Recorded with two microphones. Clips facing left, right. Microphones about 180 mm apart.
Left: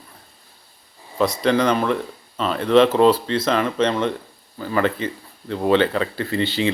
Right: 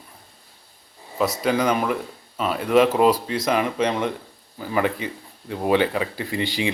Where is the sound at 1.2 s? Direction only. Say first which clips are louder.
Left 3 dB; 10° right (ahead or behind).